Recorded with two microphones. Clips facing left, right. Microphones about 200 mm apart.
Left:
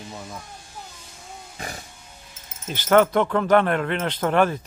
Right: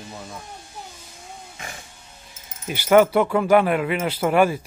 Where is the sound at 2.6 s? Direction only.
10° right (ahead or behind).